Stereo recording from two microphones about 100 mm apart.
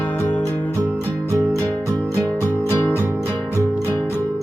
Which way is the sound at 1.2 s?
30° right (ahead or behind).